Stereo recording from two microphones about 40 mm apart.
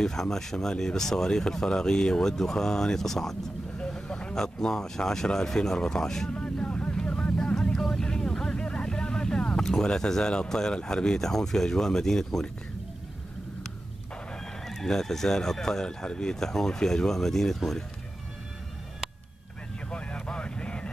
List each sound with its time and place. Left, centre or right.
0.0 s speech: centre
6.3 s vehicle: left
7.8 s vehicle: centre
10.5 s speech: centre
14.6 s speech: centre
19.9 s vehicle: left